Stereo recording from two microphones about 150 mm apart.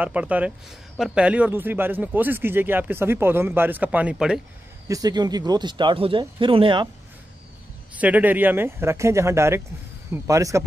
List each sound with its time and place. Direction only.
0.0 s speech: 10° right (ahead or behind)
4.8 s speech: 25° right (ahead or behind)
7.9 s speech: 10° right (ahead or behind)